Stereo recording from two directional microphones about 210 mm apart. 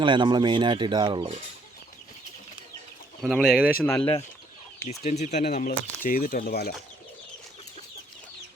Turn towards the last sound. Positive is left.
turn(degrees=45)  # may be behind; listen again after turning